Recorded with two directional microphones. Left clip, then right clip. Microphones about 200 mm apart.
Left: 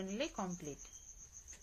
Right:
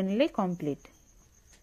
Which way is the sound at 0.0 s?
45° right (ahead or behind).